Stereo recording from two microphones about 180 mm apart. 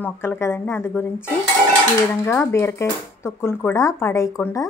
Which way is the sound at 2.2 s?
15° left (ahead or behind).